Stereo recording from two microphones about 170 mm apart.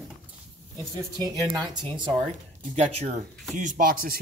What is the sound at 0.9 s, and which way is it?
Speech, 20° right (ahead or behind).